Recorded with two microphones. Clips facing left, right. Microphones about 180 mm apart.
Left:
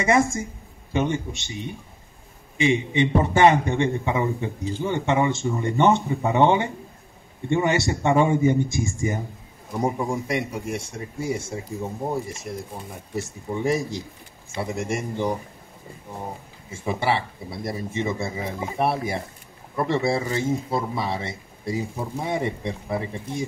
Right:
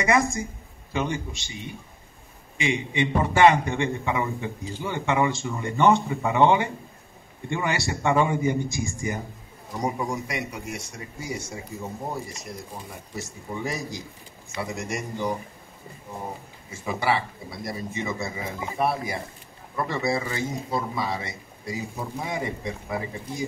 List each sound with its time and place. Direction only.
0.0 s a man's voice: 25° left (ahead or behind)
2.6 s a man's voice: 20° left (ahead or behind)
13.1 s a man's voice: 25° left (ahead or behind)
16.7 s a man's voice: 25° left (ahead or behind)